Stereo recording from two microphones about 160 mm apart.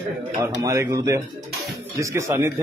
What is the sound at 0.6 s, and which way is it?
A man's voice, 20° right (ahead or behind).